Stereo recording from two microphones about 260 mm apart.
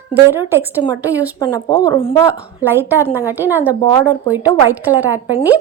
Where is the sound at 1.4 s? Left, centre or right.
Centre.